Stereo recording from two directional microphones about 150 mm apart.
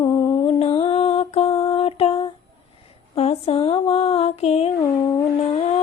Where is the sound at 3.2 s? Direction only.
45° left (ahead or behind).